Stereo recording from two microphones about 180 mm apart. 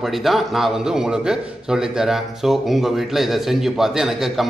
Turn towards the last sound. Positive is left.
turn(degrees=0)  # may be behind; listen again after turning